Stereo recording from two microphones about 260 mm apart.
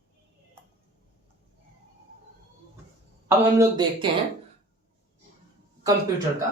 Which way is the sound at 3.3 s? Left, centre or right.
Centre.